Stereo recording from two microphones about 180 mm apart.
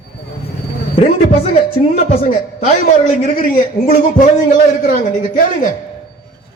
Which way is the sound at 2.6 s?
40° left (ahead or behind).